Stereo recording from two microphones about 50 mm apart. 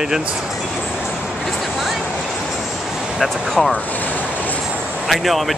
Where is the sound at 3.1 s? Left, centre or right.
Centre.